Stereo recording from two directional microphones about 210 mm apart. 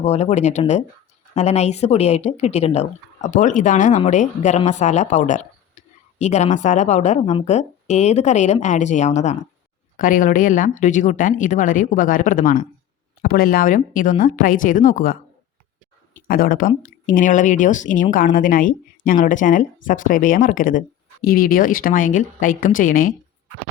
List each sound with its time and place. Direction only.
0.0 s speech: 30° left (ahead or behind)
16.2 s speech: 40° left (ahead or behind)